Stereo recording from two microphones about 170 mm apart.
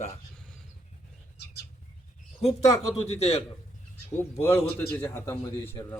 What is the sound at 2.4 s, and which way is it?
A man's voice, 40° left (ahead or behind).